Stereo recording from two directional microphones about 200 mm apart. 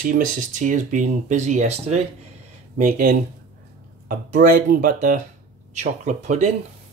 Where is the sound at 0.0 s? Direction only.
40° right (ahead or behind).